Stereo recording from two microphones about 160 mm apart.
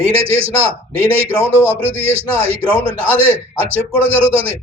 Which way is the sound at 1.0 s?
15° right (ahead or behind).